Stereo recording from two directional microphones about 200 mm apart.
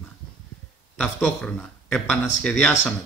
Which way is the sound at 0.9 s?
Centre (ahead or behind).